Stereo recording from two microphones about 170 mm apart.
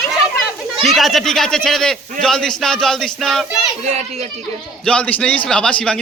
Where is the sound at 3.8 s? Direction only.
40° right (ahead or behind).